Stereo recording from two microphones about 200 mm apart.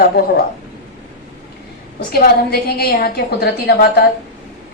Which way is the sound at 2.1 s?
50° left (ahead or behind).